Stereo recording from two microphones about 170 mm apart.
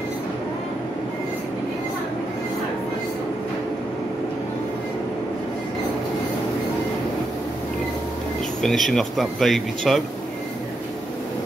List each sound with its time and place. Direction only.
8.5 s speech: centre (ahead or behind)